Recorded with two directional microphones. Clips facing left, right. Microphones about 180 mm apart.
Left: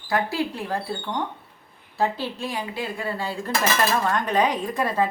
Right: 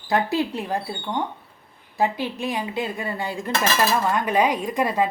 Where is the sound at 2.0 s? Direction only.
15° right (ahead or behind).